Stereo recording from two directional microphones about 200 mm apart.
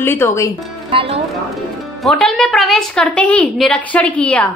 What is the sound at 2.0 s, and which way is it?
A woman's voice, centre (ahead or behind).